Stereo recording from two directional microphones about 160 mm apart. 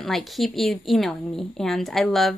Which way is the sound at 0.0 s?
Centre (ahead or behind).